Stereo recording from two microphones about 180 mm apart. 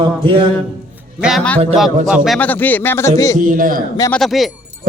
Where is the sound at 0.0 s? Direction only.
30° right (ahead or behind).